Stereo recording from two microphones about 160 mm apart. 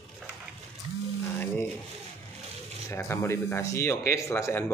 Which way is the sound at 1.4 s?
10° left (ahead or behind).